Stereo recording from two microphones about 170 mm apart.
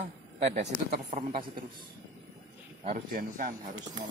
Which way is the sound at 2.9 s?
55° right (ahead or behind).